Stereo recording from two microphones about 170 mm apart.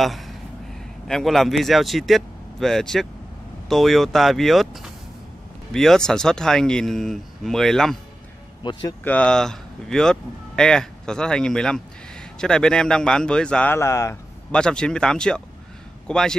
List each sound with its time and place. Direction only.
0.0 s a sound: centre (ahead or behind)
1.0 s speech: centre (ahead or behind)
8.6 s a man's voice: 30° left (ahead or behind)
9.0 s speech: 5° left (ahead or behind)
14.5 s speech: 5° left (ahead or behind)